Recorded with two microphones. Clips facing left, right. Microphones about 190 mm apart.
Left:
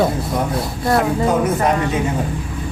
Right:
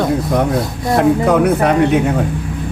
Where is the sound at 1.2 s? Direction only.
65° right (ahead or behind).